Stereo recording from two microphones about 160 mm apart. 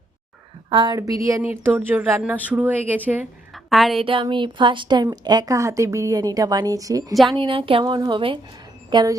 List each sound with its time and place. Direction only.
0.7 s speech: 30° right (ahead or behind); by 3.0 s 10° right (ahead or behind)
3.5 s a sound: centre (ahead or behind)
4.0 s speech: 35° right (ahead or behind)
7.3 s a woman's voice: 35° right (ahead or behind)